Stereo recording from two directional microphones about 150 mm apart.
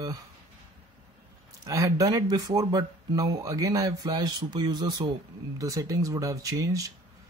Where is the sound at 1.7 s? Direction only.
20° right (ahead or behind).